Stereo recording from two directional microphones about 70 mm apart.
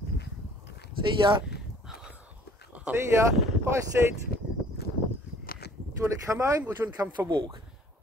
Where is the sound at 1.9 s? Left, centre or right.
Centre.